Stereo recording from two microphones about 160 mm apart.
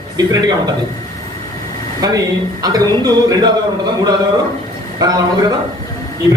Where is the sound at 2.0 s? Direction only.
25° right (ahead or behind).